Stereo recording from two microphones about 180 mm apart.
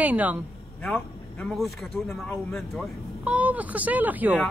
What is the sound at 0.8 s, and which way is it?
Speech, 5° left (ahead or behind).